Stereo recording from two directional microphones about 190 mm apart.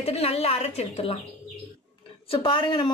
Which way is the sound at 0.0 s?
30° left (ahead or behind).